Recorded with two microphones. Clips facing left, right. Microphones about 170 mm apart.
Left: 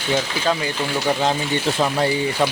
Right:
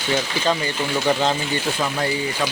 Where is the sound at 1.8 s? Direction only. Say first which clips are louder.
Left 4 dB; 25° left (ahead or behind).